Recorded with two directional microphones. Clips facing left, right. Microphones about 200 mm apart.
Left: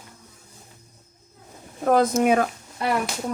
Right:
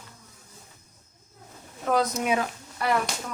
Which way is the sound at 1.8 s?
50° left (ahead or behind).